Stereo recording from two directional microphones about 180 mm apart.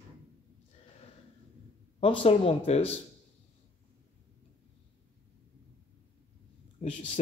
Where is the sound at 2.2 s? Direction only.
30° left (ahead or behind).